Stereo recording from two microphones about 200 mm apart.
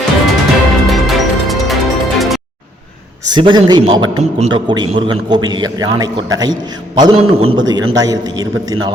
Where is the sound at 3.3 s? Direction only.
20° right (ahead or behind).